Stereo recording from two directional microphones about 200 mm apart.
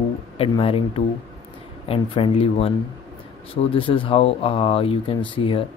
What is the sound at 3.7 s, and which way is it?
Speech, 25° left (ahead or behind).